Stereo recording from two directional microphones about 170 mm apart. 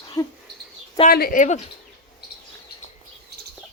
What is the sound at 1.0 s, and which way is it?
Speech, 60° left (ahead or behind).